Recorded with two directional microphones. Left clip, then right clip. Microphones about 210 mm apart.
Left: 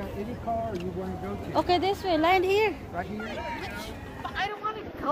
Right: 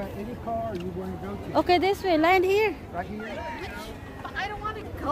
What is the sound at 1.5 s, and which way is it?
Speech, 30° right (ahead or behind).